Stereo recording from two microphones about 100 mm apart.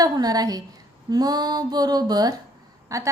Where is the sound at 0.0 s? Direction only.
40° right (ahead or behind).